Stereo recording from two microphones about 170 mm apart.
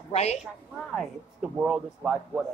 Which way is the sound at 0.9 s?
5° right (ahead or behind).